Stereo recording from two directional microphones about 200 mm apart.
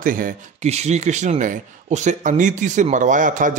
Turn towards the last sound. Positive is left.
turn(degrees=-40)  # may be behind; listen again after turning